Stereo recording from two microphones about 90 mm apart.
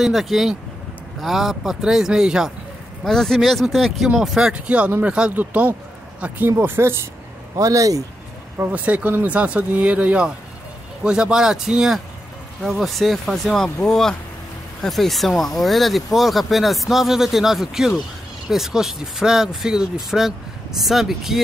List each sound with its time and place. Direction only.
0.0 s speech: centre (ahead or behind)
3.0 s speech: 5° left (ahead or behind); by 7.0 s 25° right (ahead or behind)
7.5 s speech: 40° right (ahead or behind)
8.5 s speech: 15° right (ahead or behind)